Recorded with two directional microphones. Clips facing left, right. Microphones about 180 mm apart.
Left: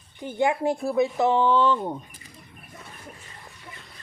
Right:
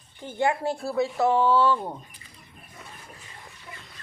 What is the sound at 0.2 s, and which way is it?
Speech, 15° left (ahead or behind).